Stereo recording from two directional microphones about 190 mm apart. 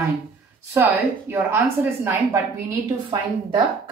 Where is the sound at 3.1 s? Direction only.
25° right (ahead or behind).